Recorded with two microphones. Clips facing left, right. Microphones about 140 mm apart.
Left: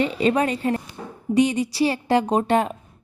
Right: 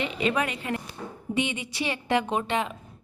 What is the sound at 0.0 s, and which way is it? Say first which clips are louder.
A woman's voice: left 7 dB; 35° left (ahead or behind).